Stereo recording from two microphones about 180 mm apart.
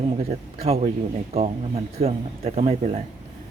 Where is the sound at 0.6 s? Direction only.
35° right (ahead or behind).